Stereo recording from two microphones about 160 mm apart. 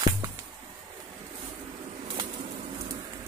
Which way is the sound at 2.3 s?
45° right (ahead or behind).